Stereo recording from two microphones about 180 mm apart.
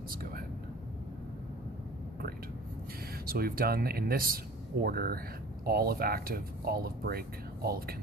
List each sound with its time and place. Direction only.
3.3 s speech: 55° right (ahead or behind)